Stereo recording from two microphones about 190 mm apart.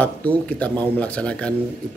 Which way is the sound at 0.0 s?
5° left (ahead or behind).